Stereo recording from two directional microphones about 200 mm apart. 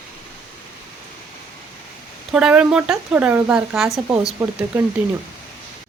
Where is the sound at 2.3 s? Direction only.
5° right (ahead or behind).